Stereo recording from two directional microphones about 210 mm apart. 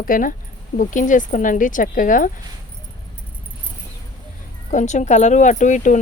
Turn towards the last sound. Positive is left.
turn(degrees=35)  # may be behind; listen again after turning